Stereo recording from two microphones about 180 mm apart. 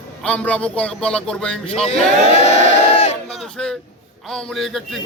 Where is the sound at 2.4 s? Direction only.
35° left (ahead or behind).